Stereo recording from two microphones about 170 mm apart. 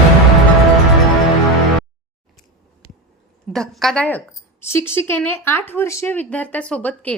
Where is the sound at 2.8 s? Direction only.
45° right (ahead or behind).